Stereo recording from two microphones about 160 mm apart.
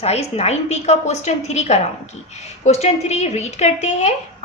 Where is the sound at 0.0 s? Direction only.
40° left (ahead or behind).